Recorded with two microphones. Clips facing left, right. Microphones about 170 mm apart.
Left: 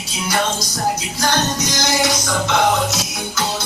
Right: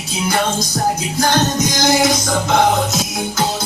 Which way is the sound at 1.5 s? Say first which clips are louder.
Right 5 dB; 50° right (ahead or behind).